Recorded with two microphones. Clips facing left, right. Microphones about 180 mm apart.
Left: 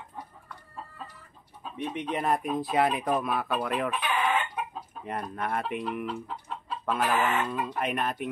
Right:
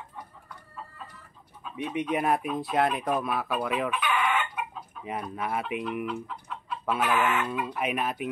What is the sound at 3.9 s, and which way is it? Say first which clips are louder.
Chicken: even; 30° left (ahead or behind).